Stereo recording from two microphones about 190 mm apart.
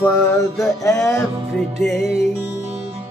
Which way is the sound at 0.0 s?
15° left (ahead or behind).